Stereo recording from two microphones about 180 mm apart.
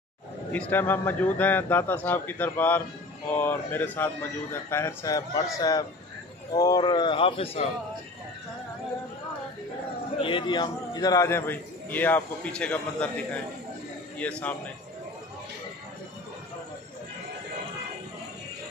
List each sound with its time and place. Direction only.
0.5 s a man's voice: 10° left (ahead or behind); by 7.6 s 30° left (ahead or behind)
10.1 s a man's voice: 30° left (ahead or behind); by 13.4 s 5° left (ahead or behind)
14.4 s a man's voice: 10° left (ahead or behind)